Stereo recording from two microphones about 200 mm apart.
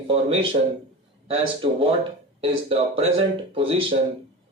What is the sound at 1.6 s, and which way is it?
Speech, 25° right (ahead or behind).